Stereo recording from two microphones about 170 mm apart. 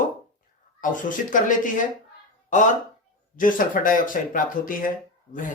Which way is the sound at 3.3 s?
50° left (ahead or behind).